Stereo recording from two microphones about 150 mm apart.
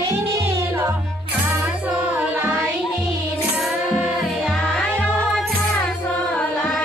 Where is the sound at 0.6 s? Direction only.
20° right (ahead or behind); by 6.8 s 5° left (ahead or behind).